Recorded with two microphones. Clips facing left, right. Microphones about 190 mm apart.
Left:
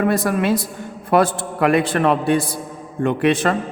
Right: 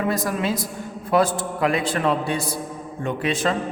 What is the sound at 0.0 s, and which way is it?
A man's voice, 60° left (ahead or behind).